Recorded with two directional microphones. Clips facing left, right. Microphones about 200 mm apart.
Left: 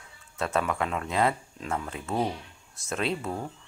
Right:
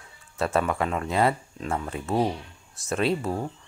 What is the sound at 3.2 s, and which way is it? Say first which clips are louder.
Speech: right 4 dB; 30° right (ahead or behind).